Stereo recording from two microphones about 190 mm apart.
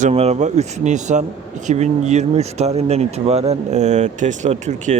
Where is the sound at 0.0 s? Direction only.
35° right (ahead or behind).